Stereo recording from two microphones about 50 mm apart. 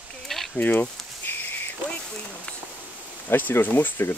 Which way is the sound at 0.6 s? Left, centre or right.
Left.